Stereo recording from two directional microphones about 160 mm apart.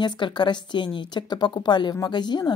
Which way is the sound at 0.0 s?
30° left (ahead or behind).